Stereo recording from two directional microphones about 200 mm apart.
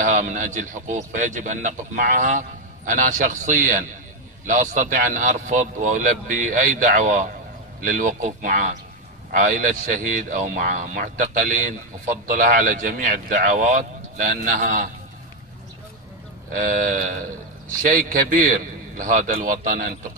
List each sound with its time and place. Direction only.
0.0 s a man's voice: 40° right (ahead or behind)
16.5 s a man's voice: 40° right (ahead or behind)